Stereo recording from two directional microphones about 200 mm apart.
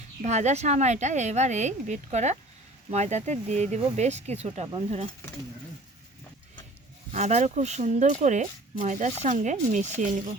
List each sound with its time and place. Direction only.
0.2 s a woman's voice: 35° right (ahead or behind)
7.1 s a woman's voice: 35° right (ahead or behind)